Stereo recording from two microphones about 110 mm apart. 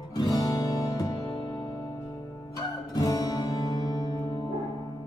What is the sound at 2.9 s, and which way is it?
Music, 35° left (ahead or behind).